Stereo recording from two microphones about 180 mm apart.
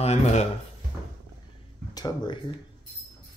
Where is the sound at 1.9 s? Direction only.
20° left (ahead or behind).